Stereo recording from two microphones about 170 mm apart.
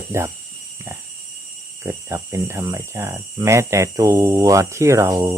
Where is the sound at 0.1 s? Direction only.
15° right (ahead or behind).